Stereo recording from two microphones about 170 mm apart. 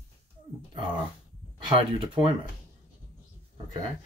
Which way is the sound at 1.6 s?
30° right (ahead or behind).